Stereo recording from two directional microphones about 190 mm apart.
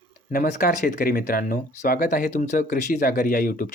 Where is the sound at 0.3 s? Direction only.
50° left (ahead or behind).